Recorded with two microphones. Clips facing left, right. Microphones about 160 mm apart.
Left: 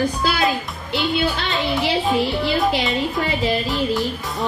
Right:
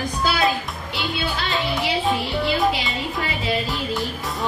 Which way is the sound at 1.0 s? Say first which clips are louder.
Left 5 dB; centre (ahead or behind).